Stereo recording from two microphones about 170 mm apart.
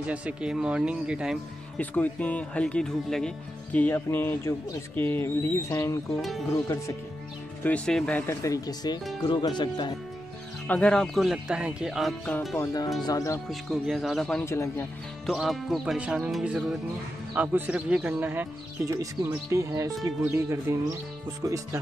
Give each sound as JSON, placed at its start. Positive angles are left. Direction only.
{"t": 0.0, "sound": "speech", "side_deg": -5}
{"t": 1.8, "sound": "speech", "side_deg": 10}
{"t": 7.6, "sound": "speech", "side_deg": 5}
{"t": 8.3, "sound": "speech", "side_deg": 20}
{"t": 10.7, "sound": "music", "side_deg": 5}
{"t": 12.5, "sound": "speech", "side_deg": 20}
{"t": 13.5, "sound": "music", "side_deg": 0}
{"t": 14.4, "sound": "speech", "side_deg": 15}
{"t": 15.2, "sound": "music", "side_deg": 0}
{"t": 17.3, "sound": "speech", "side_deg": -10}